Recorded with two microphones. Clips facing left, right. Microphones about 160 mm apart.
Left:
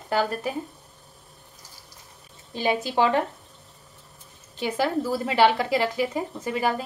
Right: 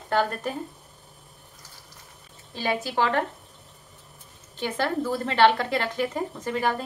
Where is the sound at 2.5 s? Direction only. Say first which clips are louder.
Left 3 dB; 15° left (ahead or behind).